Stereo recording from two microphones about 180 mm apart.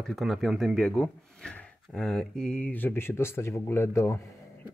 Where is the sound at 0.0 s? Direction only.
Centre (ahead or behind).